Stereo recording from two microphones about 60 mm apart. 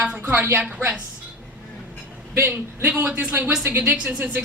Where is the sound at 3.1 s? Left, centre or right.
Right.